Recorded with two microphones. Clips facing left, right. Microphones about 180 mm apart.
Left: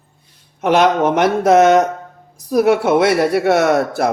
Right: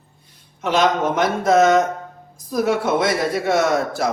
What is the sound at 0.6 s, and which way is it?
Speech, 60° left (ahead or behind).